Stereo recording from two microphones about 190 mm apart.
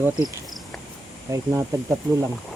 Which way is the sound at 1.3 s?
15° right (ahead or behind).